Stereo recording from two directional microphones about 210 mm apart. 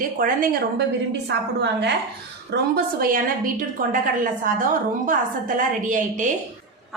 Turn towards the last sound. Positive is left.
turn(degrees=-40)  # may be behind; listen again after turning